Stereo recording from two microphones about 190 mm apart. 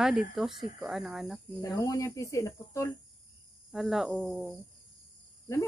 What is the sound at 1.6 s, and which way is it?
Speech, 15° left (ahead or behind).